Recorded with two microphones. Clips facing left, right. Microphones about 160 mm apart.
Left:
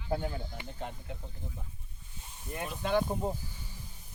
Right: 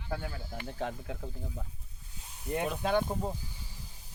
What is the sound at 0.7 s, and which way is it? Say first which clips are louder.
Speech: right 6 dB; 90° right.